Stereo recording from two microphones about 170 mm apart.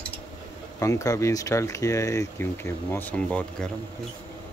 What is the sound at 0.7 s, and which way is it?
Speech, 20° left (ahead or behind).